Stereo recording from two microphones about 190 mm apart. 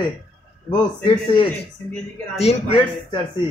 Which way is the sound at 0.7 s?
25° left (ahead or behind).